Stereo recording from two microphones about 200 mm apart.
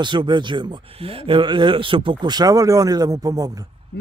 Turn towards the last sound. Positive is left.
turn(degrees=-20)  # may be behind; listen again after turning